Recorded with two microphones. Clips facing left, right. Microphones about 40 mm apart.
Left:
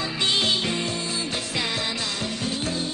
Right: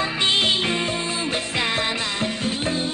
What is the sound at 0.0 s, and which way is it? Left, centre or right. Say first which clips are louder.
Music: right 3 dB; right.